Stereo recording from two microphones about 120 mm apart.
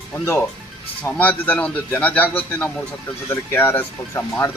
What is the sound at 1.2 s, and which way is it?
Speech, 15° left (ahead or behind).